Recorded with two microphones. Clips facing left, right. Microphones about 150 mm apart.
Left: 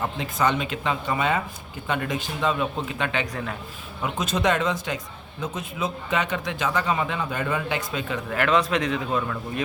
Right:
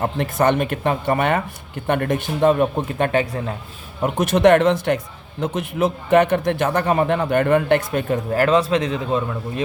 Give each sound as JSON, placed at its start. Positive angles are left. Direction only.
{"t": 0.0, "sound": "speech", "side_deg": -55}
{"t": 4.0, "sound": "speech", "side_deg": -60}
{"t": 8.3, "sound": "a man's voice", "side_deg": -35}